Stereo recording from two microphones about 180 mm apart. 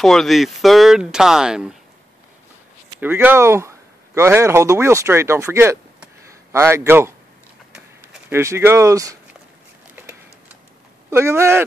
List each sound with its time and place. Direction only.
0.0 s speech: centre (ahead or behind)
3.0 s a man's voice: 10° right (ahead or behind)
7.7 s a sound: 5° right (ahead or behind)
8.4 s speech: 15° right (ahead or behind)
11.1 s speech: 15° right (ahead or behind)